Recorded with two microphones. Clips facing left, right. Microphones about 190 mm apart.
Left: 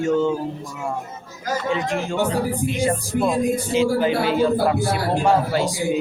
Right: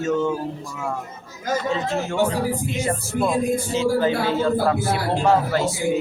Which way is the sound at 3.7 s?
15° left (ahead or behind).